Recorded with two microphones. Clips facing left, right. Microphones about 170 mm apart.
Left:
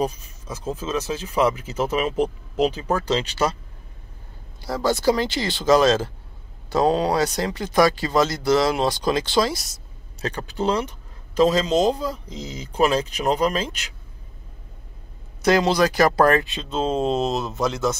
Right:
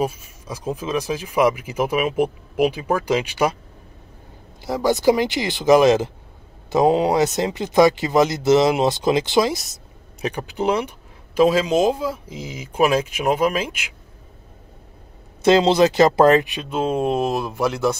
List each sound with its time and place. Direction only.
0.0 s speech: 10° right (ahead or behind)
4.6 s speech: 20° right (ahead or behind)
15.4 s speech: 25° right (ahead or behind)
17.0 s speech: 25° left (ahead or behind)
17.5 s speech: 10° right (ahead or behind)